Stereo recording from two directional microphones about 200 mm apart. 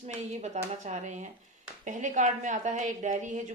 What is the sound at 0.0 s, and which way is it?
A woman's voice, 35° right (ahead or behind).